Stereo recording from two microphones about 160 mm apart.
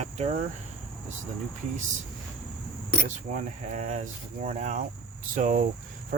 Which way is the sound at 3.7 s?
45° right (ahead or behind).